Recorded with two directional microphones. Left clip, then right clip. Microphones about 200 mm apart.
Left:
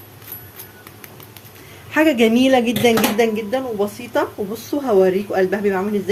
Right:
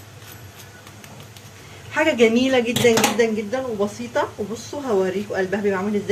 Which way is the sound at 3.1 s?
50° left (ahead or behind).